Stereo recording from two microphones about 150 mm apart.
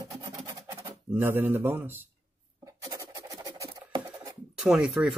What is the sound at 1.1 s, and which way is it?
Speech, 15° right (ahead or behind).